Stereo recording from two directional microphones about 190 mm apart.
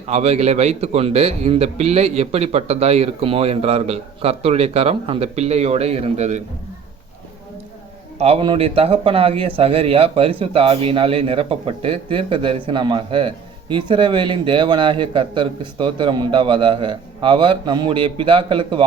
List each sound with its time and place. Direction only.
0.1 s a man's voice: 35° right (ahead or behind)
8.2 s a man's voice: 30° right (ahead or behind)